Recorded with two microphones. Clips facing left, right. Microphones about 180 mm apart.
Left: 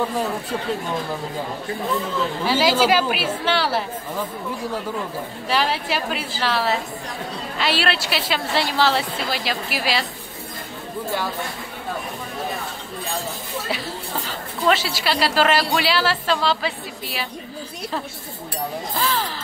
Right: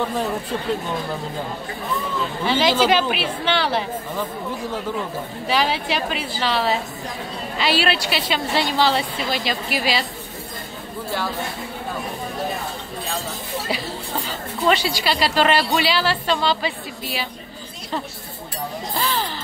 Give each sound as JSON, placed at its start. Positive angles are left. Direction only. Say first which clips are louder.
{"t": 2.4, "sound": "speech", "louder": "right 1 dB", "side_deg": 5}
{"t": 5.5, "sound": "speech", "louder": "right 1 dB", "side_deg": 0}
{"t": 13.7, "sound": "a woman's voice", "louder": "even", "side_deg": 0}
{"t": 18.9, "sound": "a sound", "louder": "even", "side_deg": 0}